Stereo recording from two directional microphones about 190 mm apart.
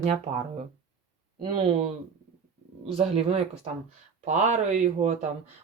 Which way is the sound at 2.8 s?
35° right (ahead or behind).